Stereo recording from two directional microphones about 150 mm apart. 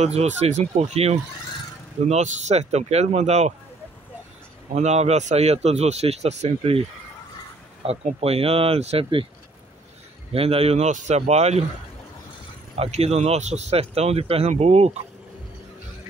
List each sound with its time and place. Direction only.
0.0 s speech: 45° right (ahead or behind)
4.7 s speech: 45° right (ahead or behind)
7.8 s speech: 40° right (ahead or behind)
10.3 s speech: 40° right (ahead or behind)
12.7 s speech: 40° right (ahead or behind)